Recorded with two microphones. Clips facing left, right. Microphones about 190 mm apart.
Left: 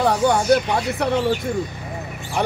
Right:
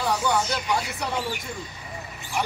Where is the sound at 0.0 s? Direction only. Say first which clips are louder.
Left 6 dB; 60° left (ahead or behind).